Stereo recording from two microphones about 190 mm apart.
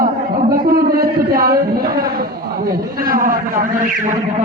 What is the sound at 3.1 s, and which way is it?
Speech, 45° right (ahead or behind).